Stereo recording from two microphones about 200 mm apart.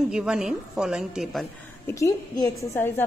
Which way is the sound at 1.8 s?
15° left (ahead or behind).